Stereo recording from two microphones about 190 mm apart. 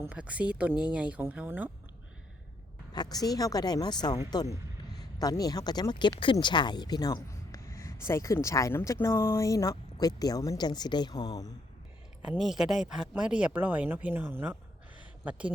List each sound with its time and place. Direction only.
0.0 s speech: 5° right (ahead or behind)
2.9 s speech: 20° left (ahead or behind)
12.2 s speech: 5° right (ahead or behind)